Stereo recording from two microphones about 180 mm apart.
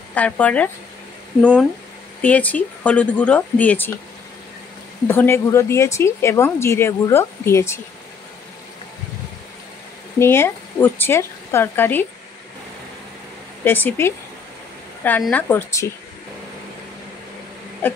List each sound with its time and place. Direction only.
0.1 s a woman's voice: 10° left (ahead or behind)
2.2 s a woman's voice: 10° left (ahead or behind)
5.0 s a woman's voice: 10° left (ahead or behind)
10.1 s a woman's voice: 15° left (ahead or behind)
13.7 s a woman's voice: 10° left (ahead or behind)
17.8 s a woman's voice: 10° left (ahead or behind)